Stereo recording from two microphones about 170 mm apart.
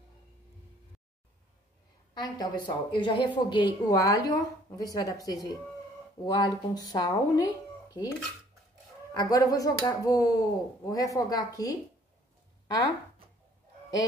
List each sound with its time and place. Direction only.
2.1 s a woman's voice: 25° left (ahead or behind)
9.1 s a woman's voice: 25° left (ahead or behind)